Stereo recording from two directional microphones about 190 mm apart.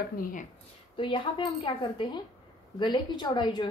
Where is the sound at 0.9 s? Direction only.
25° left (ahead or behind).